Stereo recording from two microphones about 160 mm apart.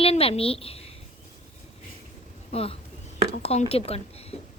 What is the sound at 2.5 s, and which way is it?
A woman's voice, 35° left (ahead or behind).